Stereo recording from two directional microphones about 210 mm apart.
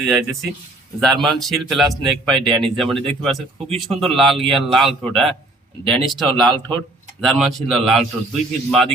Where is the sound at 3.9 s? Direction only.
Centre (ahead or behind).